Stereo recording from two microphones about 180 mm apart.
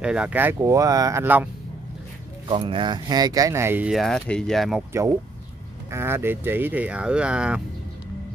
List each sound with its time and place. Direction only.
0.0 s speech: 5° right (ahead or behind)
2.4 s speech: 30° right (ahead or behind); by 4.8 s centre (ahead or behind)
5.9 s speech: 15° right (ahead or behind)